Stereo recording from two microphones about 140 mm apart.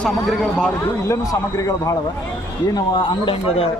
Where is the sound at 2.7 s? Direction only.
35° left (ahead or behind).